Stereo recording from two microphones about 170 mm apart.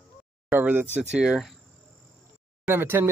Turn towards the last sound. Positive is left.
turn(degrees=-10)  # may be behind; listen again after turning